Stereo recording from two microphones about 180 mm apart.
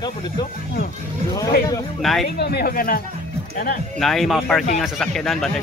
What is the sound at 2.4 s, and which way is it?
Speech, 60° left (ahead or behind).